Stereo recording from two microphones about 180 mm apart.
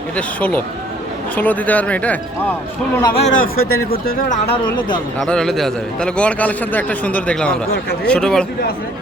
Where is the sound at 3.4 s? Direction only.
55° left (ahead or behind).